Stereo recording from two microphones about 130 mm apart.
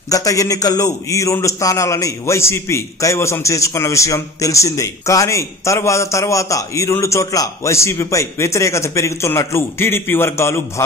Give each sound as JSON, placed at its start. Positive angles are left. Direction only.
{"t": 0.1, "sound": "a man's voice", "side_deg": 25}